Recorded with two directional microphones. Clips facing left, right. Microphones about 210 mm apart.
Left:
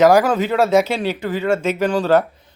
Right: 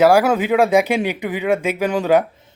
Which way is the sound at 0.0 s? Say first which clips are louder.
Even; 10° right (ahead or behind).